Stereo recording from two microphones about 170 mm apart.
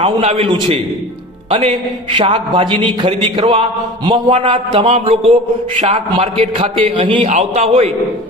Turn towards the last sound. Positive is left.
turn(degrees=-35)  # may be behind; listen again after turning